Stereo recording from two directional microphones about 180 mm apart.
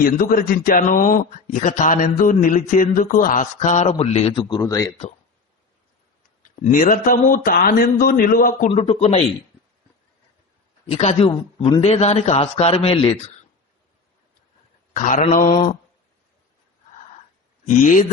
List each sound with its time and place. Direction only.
0.0 s speech: 50° left (ahead or behind); by 4.9 s 20° left (ahead or behind)
6.4 s speech: 45° left (ahead or behind)
8.7 s a man's voice: 35° left (ahead or behind)
10.8 s a man's voice: 35° left (ahead or behind)
14.9 s speech: 45° left (ahead or behind)
17.7 s speech: 45° left (ahead or behind)